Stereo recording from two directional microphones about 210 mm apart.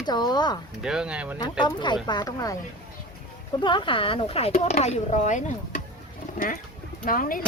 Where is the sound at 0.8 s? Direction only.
5° right (ahead or behind).